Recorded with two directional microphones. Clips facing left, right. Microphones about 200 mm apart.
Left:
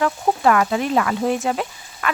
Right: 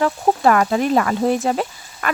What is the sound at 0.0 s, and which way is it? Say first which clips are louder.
Speech: right 2 dB; 40° right (ahead or behind).